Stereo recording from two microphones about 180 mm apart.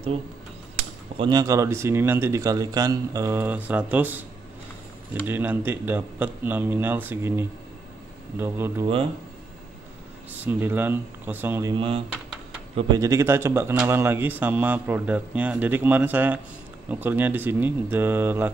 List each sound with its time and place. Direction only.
0.7 s speech: 30° right (ahead or behind); by 4.2 s 10° right (ahead or behind)
5.2 s speech: 10° right (ahead or behind)
10.3 s speech: 10° right (ahead or behind)
11.7 s speech: 30° right (ahead or behind); by 18.5 s 10° right (ahead or behind)